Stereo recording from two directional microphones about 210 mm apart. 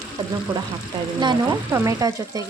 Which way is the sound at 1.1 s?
20° right (ahead or behind).